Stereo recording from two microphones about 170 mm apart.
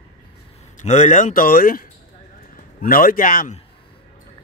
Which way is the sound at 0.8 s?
45° left (ahead or behind).